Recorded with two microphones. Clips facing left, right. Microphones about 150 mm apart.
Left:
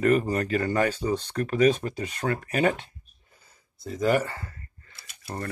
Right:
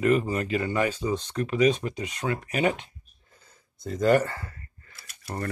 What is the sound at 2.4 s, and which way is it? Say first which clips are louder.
Speech: left 1 dB; 40° left (ahead or behind).